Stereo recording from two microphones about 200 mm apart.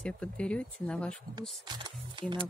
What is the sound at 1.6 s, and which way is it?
Speech, 20° right (ahead or behind).